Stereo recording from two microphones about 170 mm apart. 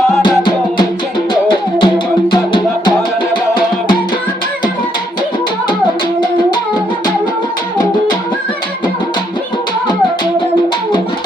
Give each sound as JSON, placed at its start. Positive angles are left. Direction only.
{"t": 0.2, "sound": "music", "side_deg": 25}